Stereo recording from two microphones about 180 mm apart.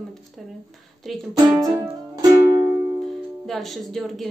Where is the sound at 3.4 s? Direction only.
Centre (ahead or behind).